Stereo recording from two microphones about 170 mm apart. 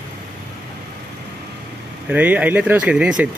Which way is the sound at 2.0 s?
10° right (ahead or behind).